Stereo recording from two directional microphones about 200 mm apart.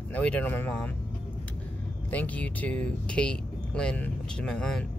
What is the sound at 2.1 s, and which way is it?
Speech, 5° left (ahead or behind).